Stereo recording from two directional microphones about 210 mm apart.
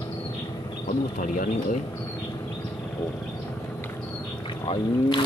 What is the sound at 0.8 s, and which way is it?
Speech, 35° left (ahead or behind).